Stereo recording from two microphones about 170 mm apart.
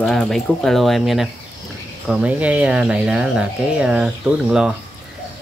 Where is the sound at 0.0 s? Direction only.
5° left (ahead or behind).